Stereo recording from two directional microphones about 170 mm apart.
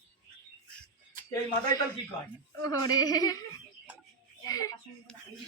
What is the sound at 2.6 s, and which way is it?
Speech, 20° left (ahead or behind).